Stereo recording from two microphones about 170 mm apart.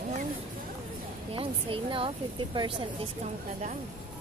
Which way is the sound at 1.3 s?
30° right (ahead or behind).